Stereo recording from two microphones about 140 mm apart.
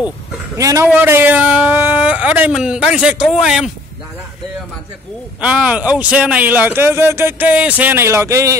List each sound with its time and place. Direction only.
0.6 s a man's voice: 25° right (ahead or behind); by 3.7 s 5° right (ahead or behind)
5.4 s speech: 10° right (ahead or behind)